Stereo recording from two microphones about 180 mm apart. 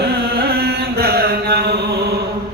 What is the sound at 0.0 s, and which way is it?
Chant, 60° right (ahead or behind).